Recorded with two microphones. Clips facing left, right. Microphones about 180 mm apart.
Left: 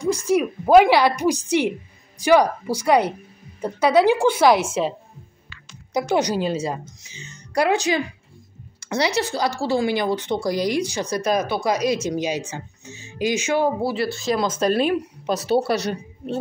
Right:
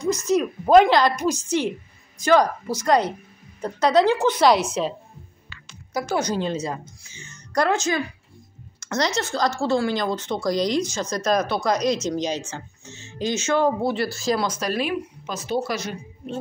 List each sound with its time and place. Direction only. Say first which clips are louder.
0.0 s speech: left 1 dB; 10° left (ahead or behind)
5.9 s speech: left 3 dB; 20° left (ahead or behind)
14.6 s a woman's voice: left 5 dB; 35° left (ahead or behind)